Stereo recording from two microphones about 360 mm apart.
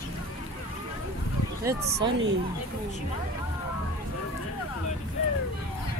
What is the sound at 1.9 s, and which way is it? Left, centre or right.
Speech, right.